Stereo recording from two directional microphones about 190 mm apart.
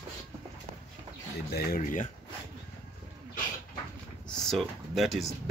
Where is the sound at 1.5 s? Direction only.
55° left (ahead or behind).